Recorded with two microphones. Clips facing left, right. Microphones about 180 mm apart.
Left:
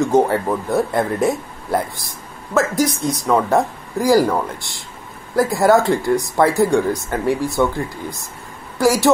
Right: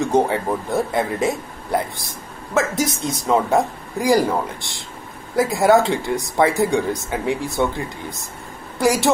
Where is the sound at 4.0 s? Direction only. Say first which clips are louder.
Left 2 dB; 20° right (ahead or behind).